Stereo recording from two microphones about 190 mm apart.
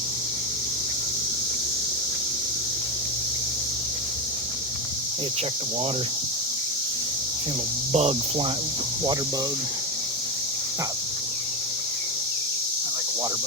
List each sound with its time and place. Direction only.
7.9 s speech: 35° right (ahead or behind)